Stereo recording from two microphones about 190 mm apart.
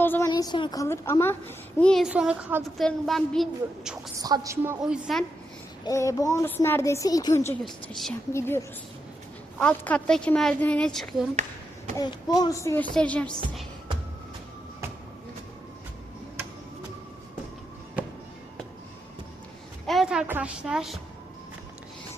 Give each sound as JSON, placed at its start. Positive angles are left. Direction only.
{"t": 0.0, "sound": "a woman's voice", "side_deg": 10}
{"t": 0.3, "sound": "a woman's voice", "side_deg": 20}
{"t": 2.6, "sound": "a woman's voice", "side_deg": 0}
{"t": 4.2, "sound": "speech", "side_deg": -15}
{"t": 4.8, "sound": "a woman's voice", "side_deg": -5}
{"t": 5.8, "sound": "a woman's voice", "side_deg": 15}
{"t": 7.6, "sound": "a woman's voice", "side_deg": 0}
{"t": 8.3, "sound": "a woman's voice", "side_deg": 15}
{"t": 11.9, "sound": "a woman's voice", "side_deg": 20}
{"t": 19.9, "sound": "a woman's voice", "side_deg": 0}